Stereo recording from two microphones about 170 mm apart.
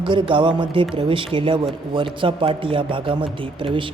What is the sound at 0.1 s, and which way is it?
Speech, 30° right (ahead or behind).